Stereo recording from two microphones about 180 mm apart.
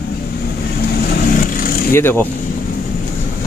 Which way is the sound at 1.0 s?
55° left (ahead or behind).